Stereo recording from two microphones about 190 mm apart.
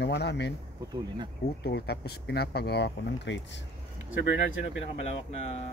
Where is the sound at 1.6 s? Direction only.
60° left (ahead or behind).